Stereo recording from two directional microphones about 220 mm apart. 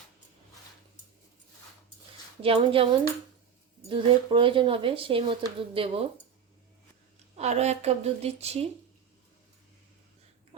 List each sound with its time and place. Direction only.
2.4 s speech: 25° right (ahead or behind)
7.3 s speech: 30° right (ahead or behind)